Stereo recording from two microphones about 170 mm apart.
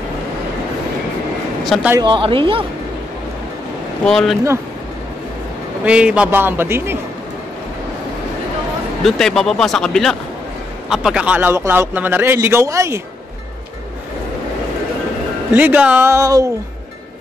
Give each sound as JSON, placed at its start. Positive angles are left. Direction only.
{"t": 1.6, "sound": "a man's voice", "side_deg": 0}
{"t": 2.0, "sound": "speech", "side_deg": -25}
{"t": 4.0, "sound": "speech", "side_deg": 5}
{"t": 5.9, "sound": "speech", "side_deg": -5}
{"t": 9.0, "sound": "speech", "side_deg": 0}
{"t": 15.5, "sound": "speech", "side_deg": -10}